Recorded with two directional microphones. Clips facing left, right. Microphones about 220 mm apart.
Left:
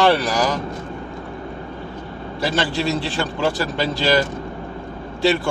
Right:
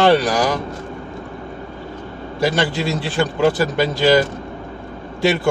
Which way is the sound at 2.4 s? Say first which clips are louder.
Right 3 dB; 15° right (ahead or behind).